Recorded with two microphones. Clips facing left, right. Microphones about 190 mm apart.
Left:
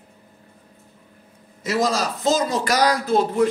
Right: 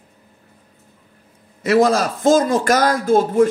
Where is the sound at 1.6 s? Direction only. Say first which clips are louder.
Right 7 dB; 60° right (ahead or behind).